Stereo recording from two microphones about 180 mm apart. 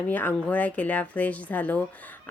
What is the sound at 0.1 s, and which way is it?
Speech, 10° left (ahead or behind).